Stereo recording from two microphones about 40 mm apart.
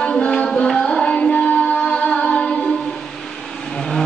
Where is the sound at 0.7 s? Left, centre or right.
Centre.